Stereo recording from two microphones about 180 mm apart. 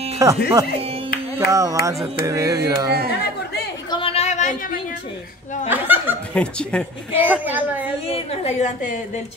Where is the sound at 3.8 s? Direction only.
30° left (ahead or behind).